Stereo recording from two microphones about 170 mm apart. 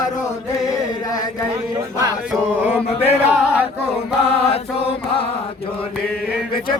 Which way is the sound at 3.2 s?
5° right (ahead or behind).